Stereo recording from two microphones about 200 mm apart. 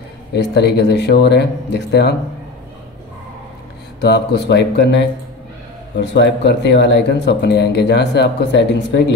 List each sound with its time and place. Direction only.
0.3 s speech: 55° left (ahead or behind)
4.0 s speech: 60° left (ahead or behind)